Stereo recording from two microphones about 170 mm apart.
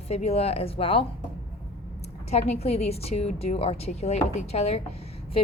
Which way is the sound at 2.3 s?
40° left (ahead or behind).